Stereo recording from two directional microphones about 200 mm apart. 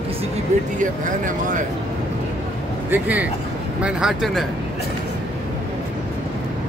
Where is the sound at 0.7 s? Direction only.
40° right (ahead or behind).